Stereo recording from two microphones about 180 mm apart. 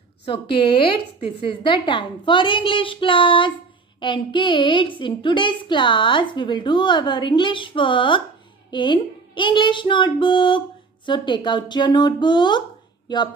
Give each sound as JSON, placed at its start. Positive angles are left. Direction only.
{"t": 0.2, "sound": "a woman's voice", "side_deg": 30}